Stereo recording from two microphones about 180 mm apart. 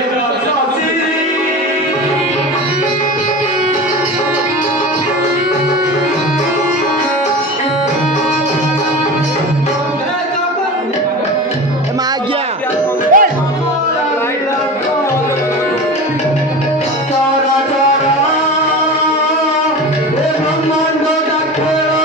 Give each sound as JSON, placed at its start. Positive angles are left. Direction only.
{"t": 13.1, "sound": "music", "side_deg": -50}